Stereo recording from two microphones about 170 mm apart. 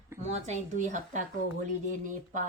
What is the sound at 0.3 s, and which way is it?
Speech, 40° right (ahead or behind).